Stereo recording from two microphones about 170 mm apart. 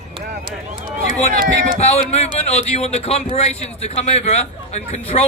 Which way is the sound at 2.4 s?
40° left (ahead or behind).